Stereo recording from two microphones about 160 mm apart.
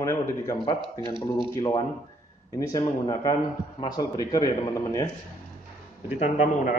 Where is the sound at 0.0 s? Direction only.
20° left (ahead or behind).